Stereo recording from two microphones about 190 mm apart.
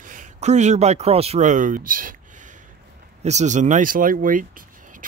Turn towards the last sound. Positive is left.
turn(degrees=-45)  # may be behind; listen again after turning